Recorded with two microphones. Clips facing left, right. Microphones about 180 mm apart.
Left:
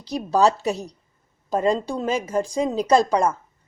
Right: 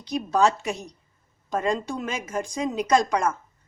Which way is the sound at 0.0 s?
35° left (ahead or behind).